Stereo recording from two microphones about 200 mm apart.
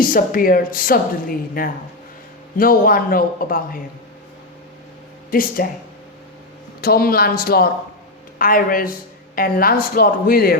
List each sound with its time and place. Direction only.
0.0 s speech: 45° left (ahead or behind)
2.6 s speech: 45° left (ahead or behind)
5.3 s speech: 45° left (ahead or behind)
6.8 s speech: 50° left (ahead or behind)